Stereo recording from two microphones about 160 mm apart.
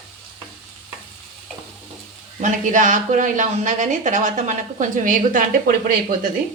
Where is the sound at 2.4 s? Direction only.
55° right (ahead or behind).